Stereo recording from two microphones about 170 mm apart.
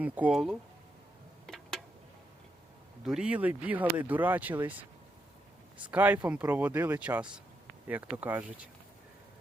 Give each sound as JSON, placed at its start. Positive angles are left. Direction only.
{"t": 0.0, "sound": "speech", "side_deg": -5}
{"t": 1.5, "sound": "a sound", "side_deg": 5}
{"t": 3.0, "sound": "speech", "side_deg": -5}